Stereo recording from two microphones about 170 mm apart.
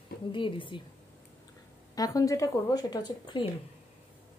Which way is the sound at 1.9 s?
20° left (ahead or behind).